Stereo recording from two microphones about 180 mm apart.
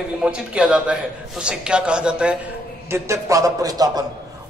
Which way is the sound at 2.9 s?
15° right (ahead or behind).